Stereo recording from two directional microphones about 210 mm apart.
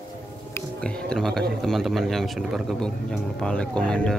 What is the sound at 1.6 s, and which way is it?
Speech, centre (ahead or behind).